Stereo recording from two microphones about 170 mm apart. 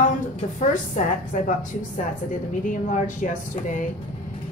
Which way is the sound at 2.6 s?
50° left (ahead or behind).